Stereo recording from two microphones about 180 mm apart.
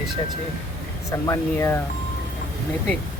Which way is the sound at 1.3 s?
15° left (ahead or behind).